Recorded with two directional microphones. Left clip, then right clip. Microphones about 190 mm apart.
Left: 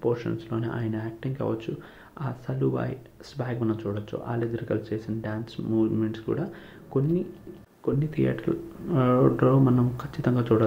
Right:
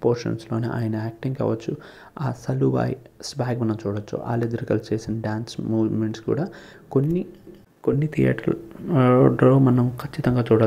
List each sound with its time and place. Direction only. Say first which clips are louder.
0.0 s speech: right 5 dB; 40° right (ahead or behind)